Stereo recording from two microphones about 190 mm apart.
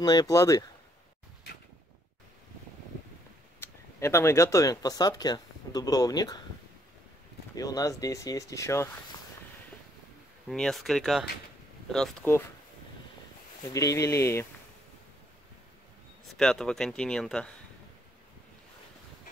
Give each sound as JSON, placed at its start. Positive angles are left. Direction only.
{"t": 0.0, "sound": "speech", "side_deg": 20}
{"t": 3.6, "sound": "speech", "side_deg": 15}
{"t": 7.5, "sound": "speech", "side_deg": 20}
{"t": 10.5, "sound": "speech", "side_deg": 0}
{"t": 13.7, "sound": "speech", "side_deg": 15}
{"t": 16.3, "sound": "speech", "side_deg": 0}